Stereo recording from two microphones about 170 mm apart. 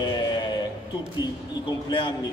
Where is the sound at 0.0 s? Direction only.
25° left (ahead or behind).